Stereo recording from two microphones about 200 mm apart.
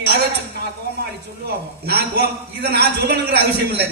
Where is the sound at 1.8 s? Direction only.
55° right (ahead or behind).